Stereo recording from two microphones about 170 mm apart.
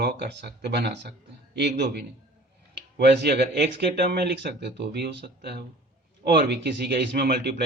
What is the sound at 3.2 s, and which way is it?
Speech, 75° right (ahead or behind).